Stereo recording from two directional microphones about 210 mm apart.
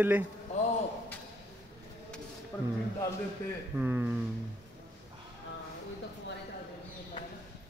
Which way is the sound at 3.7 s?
10° right (ahead or behind).